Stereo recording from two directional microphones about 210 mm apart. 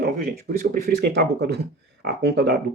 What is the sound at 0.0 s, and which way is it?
Speech, 45° right (ahead or behind).